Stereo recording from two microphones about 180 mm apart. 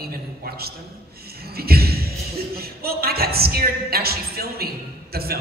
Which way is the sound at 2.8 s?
60° right (ahead or behind).